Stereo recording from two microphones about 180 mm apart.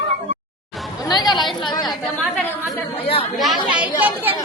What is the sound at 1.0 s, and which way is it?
Chatter, 25° left (ahead or behind).